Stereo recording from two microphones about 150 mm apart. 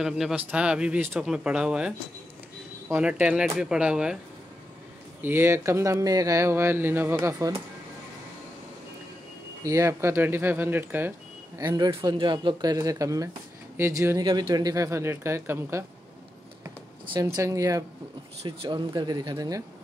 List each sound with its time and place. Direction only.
0.0 s speech: 5° right (ahead or behind)
5.2 s speech: 15° right (ahead or behind)
9.6 s speech: 20° right (ahead or behind)
17.1 s speech: 25° right (ahead or behind)
18.4 s speech: 35° right (ahead or behind)